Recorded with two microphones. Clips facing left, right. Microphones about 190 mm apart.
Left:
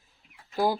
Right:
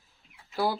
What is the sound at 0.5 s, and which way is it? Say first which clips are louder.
Speech: left 3 dB; 15° left (ahead or behind).